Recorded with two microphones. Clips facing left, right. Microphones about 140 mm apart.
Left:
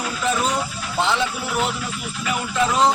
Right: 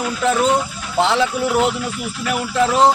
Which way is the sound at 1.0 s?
90° right.